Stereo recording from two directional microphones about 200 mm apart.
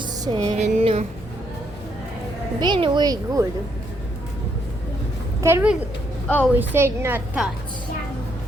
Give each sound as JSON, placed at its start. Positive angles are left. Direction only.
{"t": 0.0, "sound": "music", "side_deg": -20}
{"t": 0.6, "sound": "speech", "side_deg": -35}
{"t": 2.6, "sound": "speech", "side_deg": -25}
{"t": 5.4, "sound": "a woman's voice", "side_deg": -15}
{"t": 6.2, "sound": "a woman's voice", "side_deg": 5}
{"t": 6.5, "sound": "a woman's voice", "side_deg": -10}